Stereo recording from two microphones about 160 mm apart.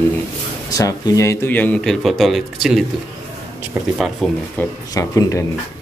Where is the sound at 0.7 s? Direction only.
20° left (ahead or behind); by 2.8 s centre (ahead or behind).